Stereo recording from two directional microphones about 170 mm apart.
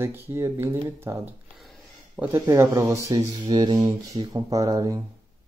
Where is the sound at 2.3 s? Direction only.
15° right (ahead or behind).